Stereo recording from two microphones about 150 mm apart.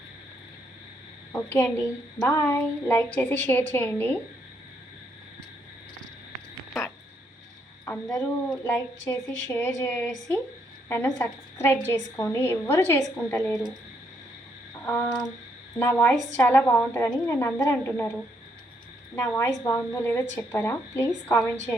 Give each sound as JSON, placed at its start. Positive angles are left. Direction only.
{"t": 1.3, "sound": "a woman's voice", "side_deg": 20}
{"t": 8.2, "sound": "a woman's voice", "side_deg": 10}
{"t": 15.8, "sound": "a woman's voice", "side_deg": 10}